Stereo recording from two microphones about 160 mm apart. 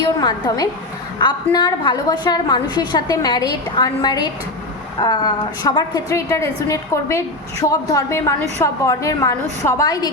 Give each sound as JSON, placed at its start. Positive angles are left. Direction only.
{"t": 0.0, "sound": "a woman's voice", "side_deg": 25}